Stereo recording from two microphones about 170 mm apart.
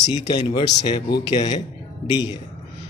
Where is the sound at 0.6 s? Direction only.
40° left (ahead or behind).